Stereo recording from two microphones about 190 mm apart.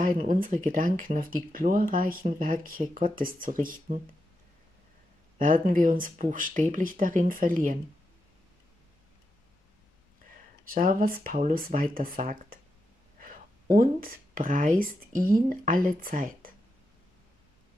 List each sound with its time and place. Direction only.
0.0 s speech: 40° right (ahead or behind)
5.4 s speech: 45° right (ahead or behind)
10.7 s speech: 45° right (ahead or behind)
13.7 s speech: 50° right (ahead or behind)